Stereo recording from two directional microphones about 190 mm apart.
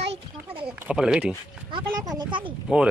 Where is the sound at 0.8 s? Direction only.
5° right (ahead or behind).